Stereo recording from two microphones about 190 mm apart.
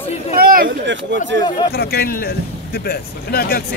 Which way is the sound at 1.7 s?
55° left (ahead or behind).